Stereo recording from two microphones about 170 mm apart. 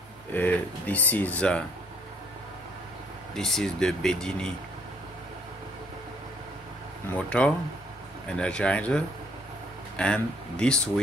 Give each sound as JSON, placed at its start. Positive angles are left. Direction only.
{"t": 0.3, "sound": "speech", "side_deg": 10}
{"t": 3.3, "sound": "speech", "side_deg": 5}
{"t": 7.1, "sound": "speech", "side_deg": 5}